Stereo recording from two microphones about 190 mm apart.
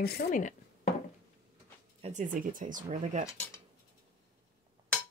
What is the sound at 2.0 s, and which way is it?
Speech, 40° right (ahead or behind).